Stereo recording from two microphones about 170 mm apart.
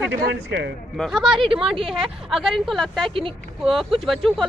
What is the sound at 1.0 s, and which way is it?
Speech, centre (ahead or behind).